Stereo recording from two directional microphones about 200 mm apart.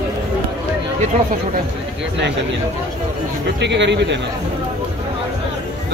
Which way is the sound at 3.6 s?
60° right (ahead or behind).